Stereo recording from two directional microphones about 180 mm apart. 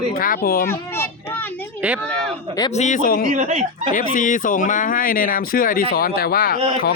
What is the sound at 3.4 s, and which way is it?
Speech, 45° right (ahead or behind).